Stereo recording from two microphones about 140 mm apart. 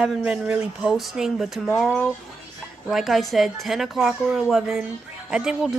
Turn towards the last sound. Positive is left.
turn(degrees=-5)  # may be behind; listen again after turning